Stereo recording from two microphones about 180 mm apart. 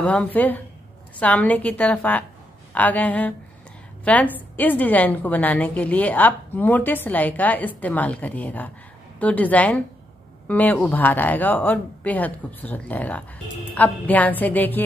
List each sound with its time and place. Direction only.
0.0 s a woman's voice: 5° left (ahead or behind)